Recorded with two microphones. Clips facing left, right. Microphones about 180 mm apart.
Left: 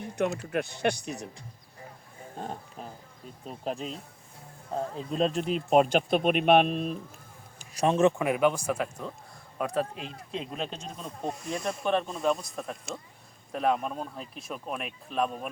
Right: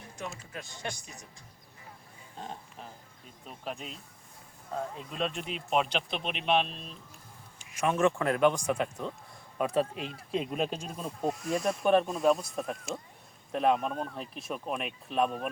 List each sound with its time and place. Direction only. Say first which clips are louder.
0.5 s speech: left 12 dB; 65° left (ahead or behind)
2.4 s speech: left 4 dB; 45° left (ahead or behind)
7.7 s speech: left 4 dB; 35° left (ahead or behind)
8.2 s speech: left 1 dB; 10° left (ahead or behind)